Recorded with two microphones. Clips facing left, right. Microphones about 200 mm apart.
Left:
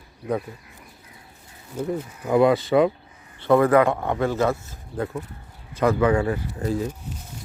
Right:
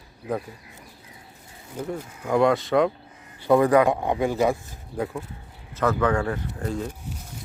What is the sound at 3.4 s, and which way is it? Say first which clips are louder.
Speech: left 1 dB; 15° right (ahead or behind).